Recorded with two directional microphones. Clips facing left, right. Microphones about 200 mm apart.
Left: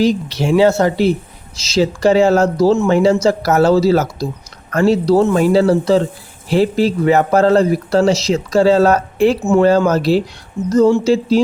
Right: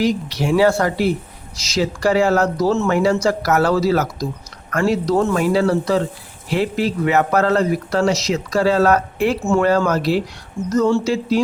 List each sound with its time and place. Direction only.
0.0 s a man's voice: 25° left (ahead or behind)